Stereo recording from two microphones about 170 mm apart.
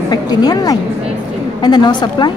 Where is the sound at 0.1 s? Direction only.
25° left (ahead or behind).